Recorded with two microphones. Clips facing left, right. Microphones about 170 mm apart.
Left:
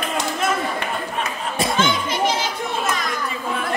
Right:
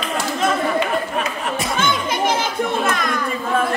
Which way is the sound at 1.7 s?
55° right (ahead or behind).